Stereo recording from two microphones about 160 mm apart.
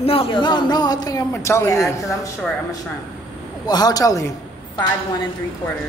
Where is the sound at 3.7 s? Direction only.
25° left (ahead or behind).